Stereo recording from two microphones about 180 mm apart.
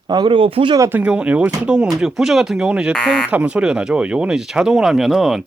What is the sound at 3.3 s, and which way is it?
Speech, 5° right (ahead or behind).